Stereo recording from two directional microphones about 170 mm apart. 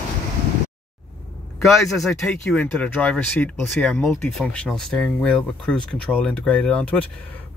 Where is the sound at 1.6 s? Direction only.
Centre (ahead or behind).